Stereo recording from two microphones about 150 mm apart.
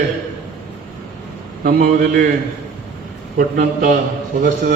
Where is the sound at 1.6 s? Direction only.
90° right.